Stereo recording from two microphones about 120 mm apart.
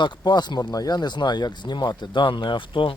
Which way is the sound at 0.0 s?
35° left (ahead or behind).